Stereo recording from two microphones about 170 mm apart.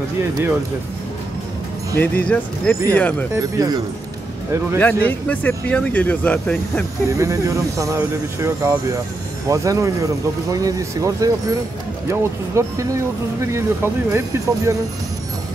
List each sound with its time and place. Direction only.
2.0 s speech: 10° left (ahead or behind)
3.3 s speech: 20° right (ahead or behind)
4.7 s speech: 10° left (ahead or behind)
7.2 s speech: 20° right (ahead or behind)